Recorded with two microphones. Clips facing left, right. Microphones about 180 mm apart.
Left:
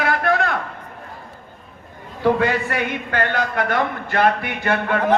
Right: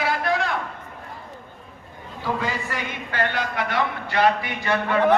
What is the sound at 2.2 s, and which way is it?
A man's voice, 65° left (ahead or behind).